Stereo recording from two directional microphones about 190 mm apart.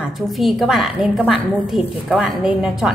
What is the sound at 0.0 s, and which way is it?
A woman's voice, centre (ahead or behind).